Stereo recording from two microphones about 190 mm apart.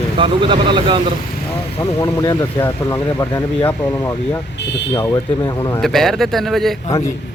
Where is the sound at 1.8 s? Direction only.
15° left (ahead or behind).